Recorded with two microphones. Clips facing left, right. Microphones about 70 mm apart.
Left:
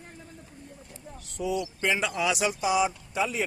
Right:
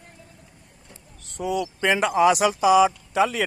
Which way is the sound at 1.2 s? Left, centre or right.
Right.